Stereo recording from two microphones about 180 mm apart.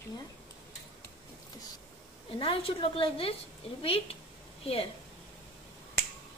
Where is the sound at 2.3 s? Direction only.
30° left (ahead or behind).